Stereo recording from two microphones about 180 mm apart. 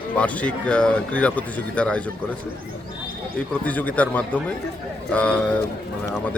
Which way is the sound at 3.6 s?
10° left (ahead or behind).